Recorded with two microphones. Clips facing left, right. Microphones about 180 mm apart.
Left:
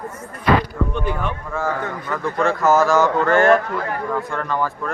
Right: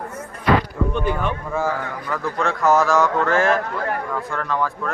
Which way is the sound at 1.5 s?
5° right (ahead or behind).